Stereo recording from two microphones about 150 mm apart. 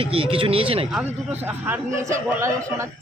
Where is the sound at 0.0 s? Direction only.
35° right (ahead or behind).